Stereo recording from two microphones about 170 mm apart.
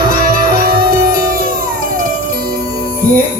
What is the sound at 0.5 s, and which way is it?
Music, 60° right (ahead or behind).